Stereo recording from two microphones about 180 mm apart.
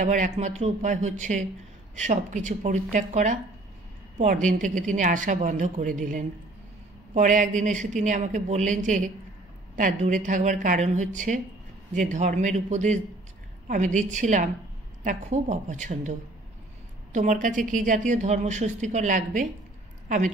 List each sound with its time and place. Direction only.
0.0 s a woman's voice: 40° right (ahead or behind)